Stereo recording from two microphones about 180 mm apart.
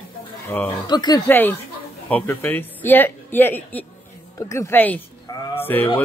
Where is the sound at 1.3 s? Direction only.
10° left (ahead or behind).